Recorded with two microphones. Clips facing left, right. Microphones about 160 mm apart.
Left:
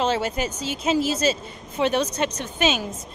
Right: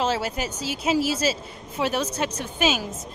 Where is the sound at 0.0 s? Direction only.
5° right (ahead or behind).